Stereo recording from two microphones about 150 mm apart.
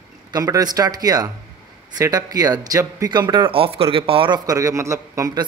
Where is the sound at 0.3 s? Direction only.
25° right (ahead or behind).